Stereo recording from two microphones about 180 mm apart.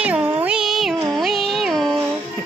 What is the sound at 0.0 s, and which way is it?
Music, 5° right (ahead or behind).